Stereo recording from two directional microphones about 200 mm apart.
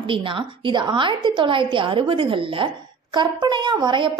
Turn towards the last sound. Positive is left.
turn(degrees=-25)  # may be behind; listen again after turning